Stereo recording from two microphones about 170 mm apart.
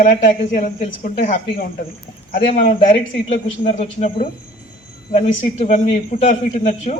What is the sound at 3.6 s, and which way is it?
A man's voice, 40° left (ahead or behind).